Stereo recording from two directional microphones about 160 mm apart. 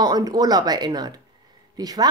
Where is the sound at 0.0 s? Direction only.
25° right (ahead or behind).